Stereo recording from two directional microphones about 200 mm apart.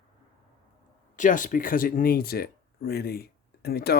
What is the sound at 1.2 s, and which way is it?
Speech, 40° left (ahead or behind).